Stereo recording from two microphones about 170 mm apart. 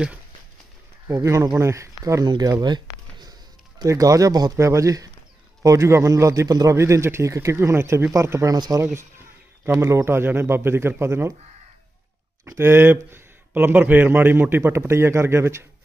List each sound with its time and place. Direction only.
1.0 s a man's voice: 15° right (ahead or behind)
2.6 s a sound: 25° right (ahead or behind)
3.8 s a man's voice: 20° right (ahead or behind)
12.4 s a man's voice: 15° right (ahead or behind)